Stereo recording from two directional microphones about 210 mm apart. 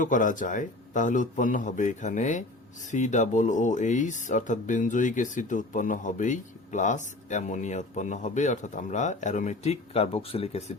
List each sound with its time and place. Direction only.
0.0 s speech: 40° left (ahead or behind)